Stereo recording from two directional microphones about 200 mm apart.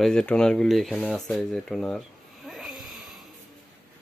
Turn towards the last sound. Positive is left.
turn(degrees=0)  # may be behind; listen again after turning